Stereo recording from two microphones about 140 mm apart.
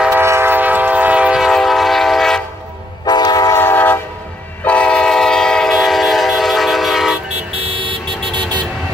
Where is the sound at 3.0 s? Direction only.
30° left (ahead or behind).